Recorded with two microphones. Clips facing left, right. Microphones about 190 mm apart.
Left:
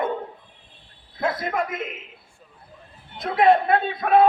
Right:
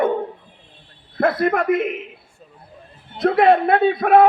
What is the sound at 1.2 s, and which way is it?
Speech, 65° right (ahead or behind).